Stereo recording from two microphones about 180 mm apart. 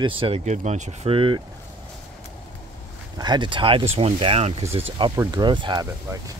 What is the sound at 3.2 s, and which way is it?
Speech, 25° right (ahead or behind).